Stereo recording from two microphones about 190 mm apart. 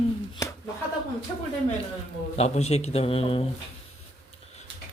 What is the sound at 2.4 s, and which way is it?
Speech, 35° left (ahead or behind).